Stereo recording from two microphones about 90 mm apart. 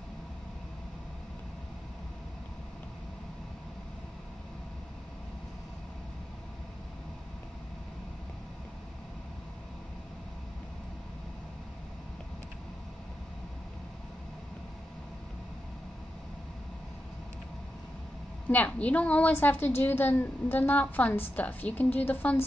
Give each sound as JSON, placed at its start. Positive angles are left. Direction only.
{"t": 18.5, "sound": "a woman's voice", "side_deg": 15}